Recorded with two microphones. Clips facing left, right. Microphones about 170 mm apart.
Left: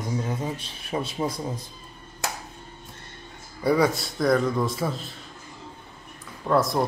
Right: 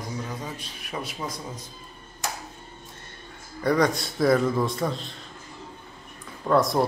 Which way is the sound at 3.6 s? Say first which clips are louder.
Left 1 dB; 5° left (ahead or behind).